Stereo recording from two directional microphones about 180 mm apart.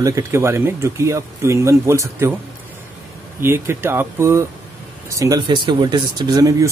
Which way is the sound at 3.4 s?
15° right (ahead or behind).